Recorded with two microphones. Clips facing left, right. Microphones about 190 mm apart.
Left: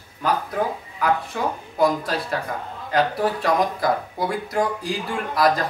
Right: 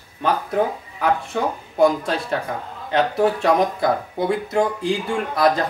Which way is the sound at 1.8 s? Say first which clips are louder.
Right 3 dB; 25° right (ahead or behind).